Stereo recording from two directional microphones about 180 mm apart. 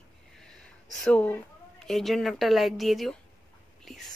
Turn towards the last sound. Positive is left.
turn(degrees=0)  # may be behind; listen again after turning